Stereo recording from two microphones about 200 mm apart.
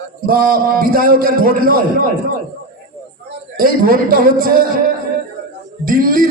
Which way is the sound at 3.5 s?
45° right (ahead or behind).